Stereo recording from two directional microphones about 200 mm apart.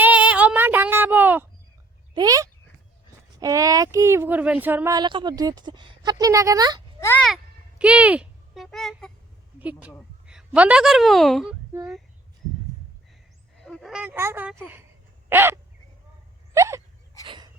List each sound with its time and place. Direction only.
0.0 s child singing: 5° right (ahead or behind)
2.1 s a sound: 15° right (ahead or behind)
3.4 s speech: 15° right (ahead or behind)
7.0 s speech: 10° left (ahead or behind)
7.8 s a child's voice: 5° right (ahead or behind)
13.6 s speech: centre (ahead or behind)
15.3 s bird: 10° right (ahead or behind)
16.6 s a sound: 15° right (ahead or behind)